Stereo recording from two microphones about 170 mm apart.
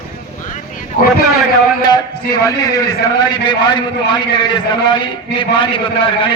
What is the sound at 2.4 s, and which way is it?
A man's voice, 20° left (ahead or behind).